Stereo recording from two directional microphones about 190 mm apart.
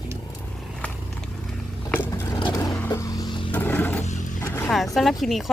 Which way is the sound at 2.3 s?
20° left (ahead or behind).